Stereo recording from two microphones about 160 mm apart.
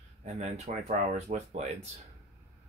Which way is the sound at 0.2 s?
45° right (ahead or behind).